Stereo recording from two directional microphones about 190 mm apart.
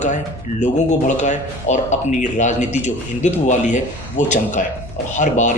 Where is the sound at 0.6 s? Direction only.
40° left (ahead or behind).